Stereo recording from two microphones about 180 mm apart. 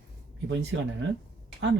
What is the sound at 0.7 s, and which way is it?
Speech, 90° right.